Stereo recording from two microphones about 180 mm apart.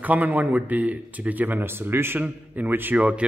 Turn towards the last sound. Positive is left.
turn(degrees=-5)  # may be behind; listen again after turning